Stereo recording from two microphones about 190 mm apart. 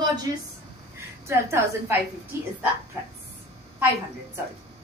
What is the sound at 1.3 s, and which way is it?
Speech, 15° right (ahead or behind).